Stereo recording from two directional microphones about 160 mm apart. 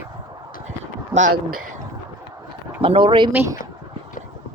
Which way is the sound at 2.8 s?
35° right (ahead or behind).